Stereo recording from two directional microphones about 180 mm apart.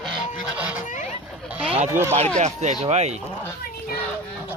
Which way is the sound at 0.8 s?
45° left (ahead or behind).